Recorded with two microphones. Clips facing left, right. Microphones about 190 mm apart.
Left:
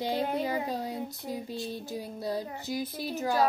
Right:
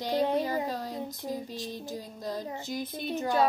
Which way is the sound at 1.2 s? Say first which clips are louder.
Even; 20° right (ahead or behind).